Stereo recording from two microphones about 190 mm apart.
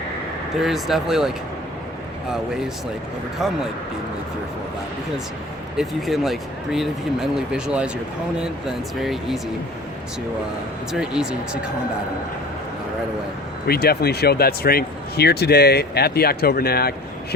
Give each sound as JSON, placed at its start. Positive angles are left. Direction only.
{"t": 0.5, "sound": "speech", "side_deg": 0}
{"t": 3.3, "sound": "speech", "side_deg": 0}
{"t": 5.7, "sound": "speech", "side_deg": 0}
{"t": 10.9, "sound": "speech", "side_deg": -5}
{"t": 13.7, "sound": "speech", "side_deg": 55}